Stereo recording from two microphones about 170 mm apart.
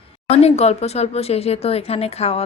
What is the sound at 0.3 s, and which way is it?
Speech, 40° left (ahead or behind).